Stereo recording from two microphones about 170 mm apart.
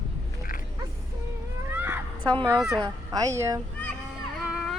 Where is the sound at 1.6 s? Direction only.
15° right (ahead or behind).